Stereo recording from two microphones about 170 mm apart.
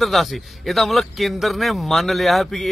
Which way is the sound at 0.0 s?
Centre (ahead or behind).